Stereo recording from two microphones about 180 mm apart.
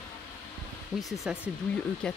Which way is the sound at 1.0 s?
Centre (ahead or behind).